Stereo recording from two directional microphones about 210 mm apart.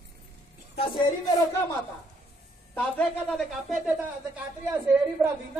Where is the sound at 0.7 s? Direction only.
25° left (ahead or behind).